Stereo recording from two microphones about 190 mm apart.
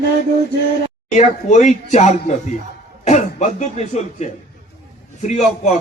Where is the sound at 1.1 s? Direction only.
40° left (ahead or behind).